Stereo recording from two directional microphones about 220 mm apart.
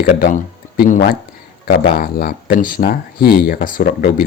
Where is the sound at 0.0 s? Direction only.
40° left (ahead or behind).